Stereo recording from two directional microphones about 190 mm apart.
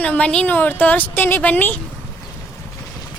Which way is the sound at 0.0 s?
5° left (ahead or behind).